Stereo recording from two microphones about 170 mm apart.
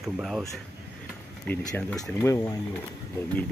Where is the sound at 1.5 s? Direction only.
10° left (ahead or behind).